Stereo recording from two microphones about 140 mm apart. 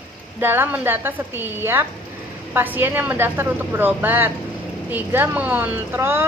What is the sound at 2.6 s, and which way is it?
A woman's voice, 15° right (ahead or behind).